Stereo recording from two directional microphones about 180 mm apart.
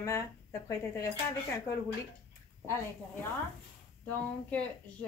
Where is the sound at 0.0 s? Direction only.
15° left (ahead or behind).